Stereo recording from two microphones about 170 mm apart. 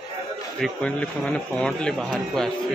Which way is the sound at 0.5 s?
5° left (ahead or behind).